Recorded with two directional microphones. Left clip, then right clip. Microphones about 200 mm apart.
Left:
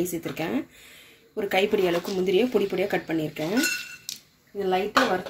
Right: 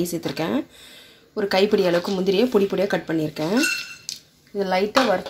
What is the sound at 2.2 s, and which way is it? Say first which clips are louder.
Speech: right 2 dB; 40° right (ahead or behind).